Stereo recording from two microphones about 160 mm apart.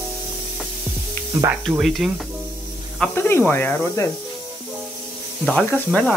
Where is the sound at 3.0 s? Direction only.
15° left (ahead or behind).